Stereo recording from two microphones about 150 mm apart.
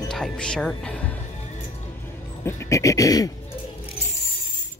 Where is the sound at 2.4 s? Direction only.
20° left (ahead or behind).